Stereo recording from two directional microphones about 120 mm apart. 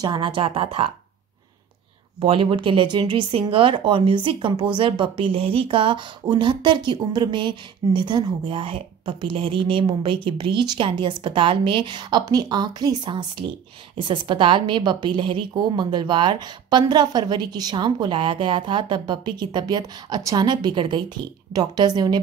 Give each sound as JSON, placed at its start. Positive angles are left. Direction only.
{"t": 0.0, "sound": "speech", "side_deg": -40}
{"t": 2.1, "sound": "a woman's voice", "side_deg": -50}